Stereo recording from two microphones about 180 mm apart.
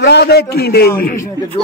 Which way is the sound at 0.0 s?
65° left (ahead or behind).